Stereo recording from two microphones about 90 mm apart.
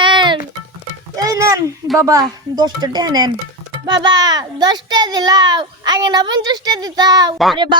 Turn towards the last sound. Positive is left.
turn(degrees=-60)  # may be behind; listen again after turning